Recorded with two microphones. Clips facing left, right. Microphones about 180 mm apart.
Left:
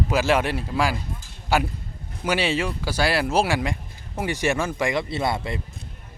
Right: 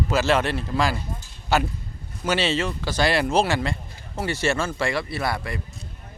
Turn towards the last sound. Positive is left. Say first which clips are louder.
# left 2 dB
turn(degrees=25)  # may be behind; listen again after turning